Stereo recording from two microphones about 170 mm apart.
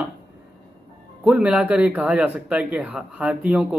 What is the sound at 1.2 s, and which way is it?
Speech, 5° right (ahead or behind).